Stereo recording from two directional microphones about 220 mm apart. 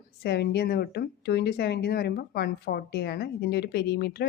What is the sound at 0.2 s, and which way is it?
Speech, 50° left (ahead or behind).